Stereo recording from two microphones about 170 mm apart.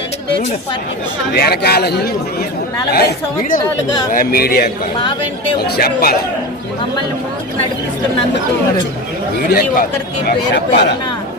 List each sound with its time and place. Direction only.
1.3 s speech: 70° left (ahead or behind)
9.5 s speech: 60° left (ahead or behind)
10.2 s speech: 85° left